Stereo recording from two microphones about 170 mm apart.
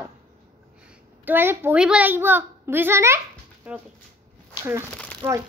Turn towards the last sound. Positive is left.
turn(degrees=-15)  # may be behind; listen again after turning